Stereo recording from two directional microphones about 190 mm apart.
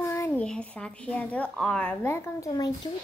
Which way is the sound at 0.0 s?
15° left (ahead or behind).